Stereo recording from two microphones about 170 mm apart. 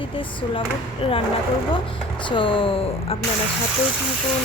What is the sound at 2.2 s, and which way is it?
Speech, 30° left (ahead or behind).